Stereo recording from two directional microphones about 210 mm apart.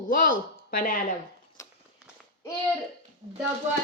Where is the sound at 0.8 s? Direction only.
40° left (ahead or behind).